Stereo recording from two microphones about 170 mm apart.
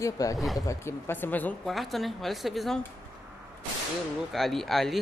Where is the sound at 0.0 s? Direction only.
20° left (ahead or behind); by 2.8 s centre (ahead or behind).